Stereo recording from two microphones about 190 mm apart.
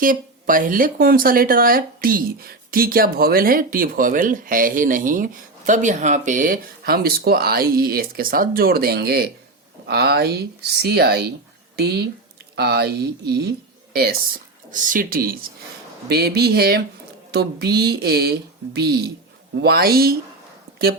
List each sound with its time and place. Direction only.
0.0 s speech: 45° right (ahead or behind)